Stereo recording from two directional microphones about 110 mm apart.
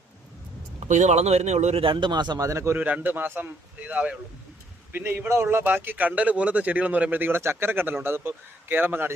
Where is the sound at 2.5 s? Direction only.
30° right (ahead or behind).